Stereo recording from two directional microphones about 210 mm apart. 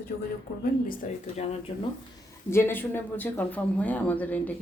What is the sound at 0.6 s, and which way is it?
Speech, 40° left (ahead or behind).